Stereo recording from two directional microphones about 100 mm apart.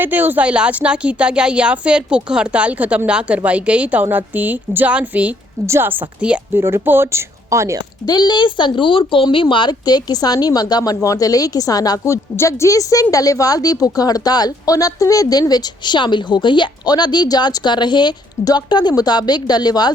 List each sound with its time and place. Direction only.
0.0 s speech: 20° right (ahead or behind)
5.6 s speech: 25° right (ahead or behind)
6.5 s speech: 25° right (ahead or behind)
8.0 s speech: 45° left (ahead or behind)